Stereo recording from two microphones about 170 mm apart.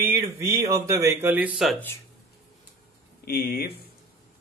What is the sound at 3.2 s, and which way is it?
Speech, 65° left (ahead or behind).